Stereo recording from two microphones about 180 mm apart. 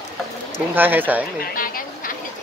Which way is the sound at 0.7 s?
10° right (ahead or behind).